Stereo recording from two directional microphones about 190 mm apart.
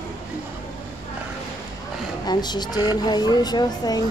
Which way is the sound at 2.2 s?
20° left (ahead or behind).